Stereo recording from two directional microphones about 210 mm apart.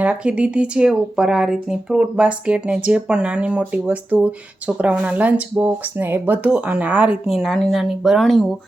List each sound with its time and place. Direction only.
0.0 s speech: 5° right (ahead or behind)